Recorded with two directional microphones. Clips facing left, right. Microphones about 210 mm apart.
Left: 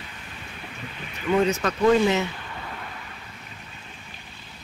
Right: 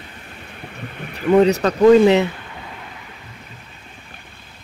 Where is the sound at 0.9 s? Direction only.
55° right (ahead or behind).